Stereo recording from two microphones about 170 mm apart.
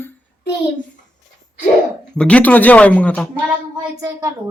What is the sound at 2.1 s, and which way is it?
Speech, 5° left (ahead or behind).